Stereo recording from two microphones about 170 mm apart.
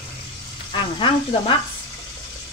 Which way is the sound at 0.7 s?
30° left (ahead or behind).